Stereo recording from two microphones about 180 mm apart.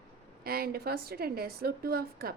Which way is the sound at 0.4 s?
55° right (ahead or behind).